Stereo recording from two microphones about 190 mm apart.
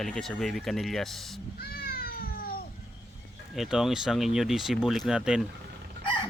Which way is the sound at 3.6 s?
Centre (ahead or behind).